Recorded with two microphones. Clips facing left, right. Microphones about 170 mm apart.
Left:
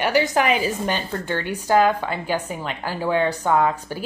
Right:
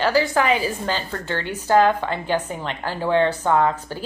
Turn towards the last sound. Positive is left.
turn(degrees=10)  # may be behind; listen again after turning